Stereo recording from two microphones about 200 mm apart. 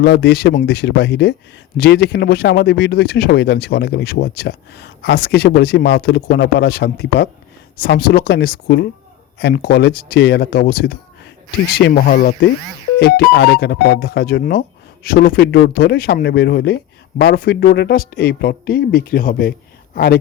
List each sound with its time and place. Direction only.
0.0 s speech: 60° left (ahead or behind)